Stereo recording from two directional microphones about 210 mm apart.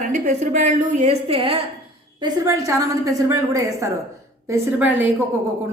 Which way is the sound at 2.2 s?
15° right (ahead or behind).